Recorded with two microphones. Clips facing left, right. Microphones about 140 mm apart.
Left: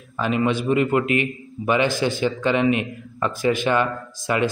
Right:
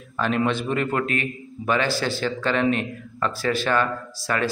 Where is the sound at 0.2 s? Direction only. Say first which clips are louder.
Left 1 dB; 10° left (ahead or behind).